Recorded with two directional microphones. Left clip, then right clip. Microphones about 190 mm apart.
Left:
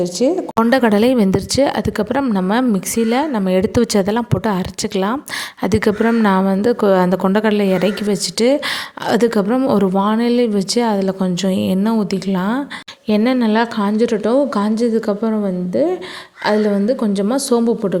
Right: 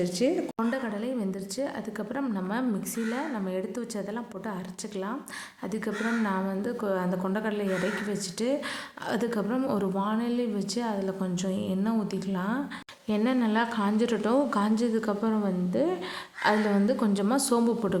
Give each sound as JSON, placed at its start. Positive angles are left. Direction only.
{"t": 0.0, "sound": "a woman's voice", "side_deg": 30}
{"t": 0.7, "sound": "a woman's voice", "side_deg": 55}